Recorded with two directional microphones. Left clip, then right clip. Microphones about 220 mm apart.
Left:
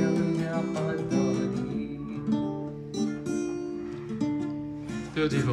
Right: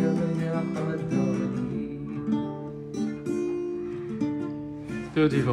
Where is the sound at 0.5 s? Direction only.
35° left (ahead or behind).